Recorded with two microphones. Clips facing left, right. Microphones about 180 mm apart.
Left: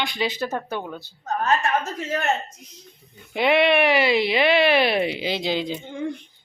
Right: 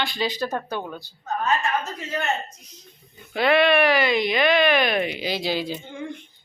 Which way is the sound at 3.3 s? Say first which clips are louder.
Even; 20° left (ahead or behind).